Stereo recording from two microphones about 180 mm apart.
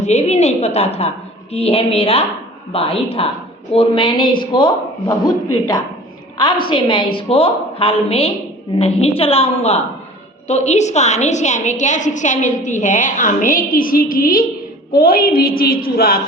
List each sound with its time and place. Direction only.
0.0 s a woman's voice: 40° left (ahead or behind)
6.3 s a woman's voice: 25° left (ahead or behind); by 16.2 s 55° left (ahead or behind)